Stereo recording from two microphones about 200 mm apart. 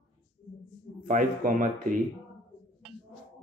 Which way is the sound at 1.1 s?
40° right (ahead or behind).